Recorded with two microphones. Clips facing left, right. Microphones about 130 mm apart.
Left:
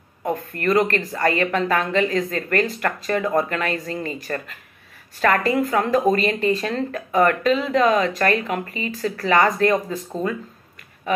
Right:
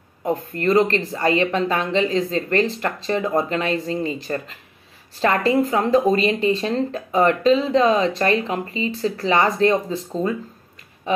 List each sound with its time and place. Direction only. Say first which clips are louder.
0.3 s speech: right 2 dB; 25° right (ahead or behind)
11.1 s speech: right 1 dB; 25° right (ahead or behind)